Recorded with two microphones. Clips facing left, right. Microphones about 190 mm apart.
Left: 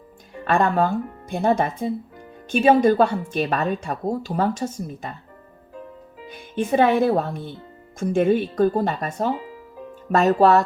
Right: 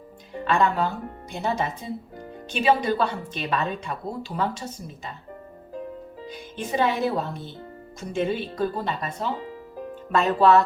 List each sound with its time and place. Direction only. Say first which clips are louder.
0.4 s a woman's voice: left 3 dB; 50° left (ahead or behind)
6.3 s a woman's voice: left 7 dB; 55° left (ahead or behind)